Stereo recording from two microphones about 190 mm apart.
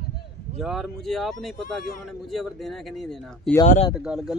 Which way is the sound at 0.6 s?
Centre (ahead or behind).